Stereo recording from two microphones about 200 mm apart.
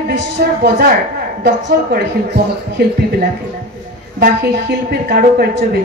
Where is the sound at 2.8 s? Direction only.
55° right (ahead or behind).